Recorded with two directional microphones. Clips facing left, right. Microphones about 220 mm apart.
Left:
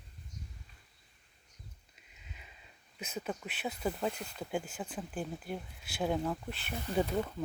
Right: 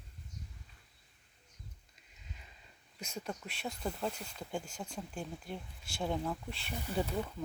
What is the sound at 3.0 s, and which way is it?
Speech, 5° left (ahead or behind).